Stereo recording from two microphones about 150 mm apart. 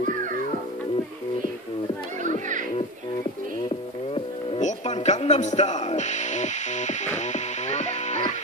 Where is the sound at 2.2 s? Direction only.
60° right (ahead or behind).